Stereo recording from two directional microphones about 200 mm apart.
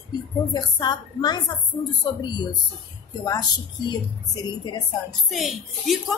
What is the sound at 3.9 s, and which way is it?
Speech, 20° left (ahead or behind).